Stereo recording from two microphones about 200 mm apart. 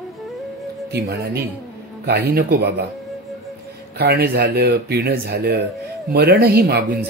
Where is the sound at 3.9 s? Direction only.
55° right (ahead or behind).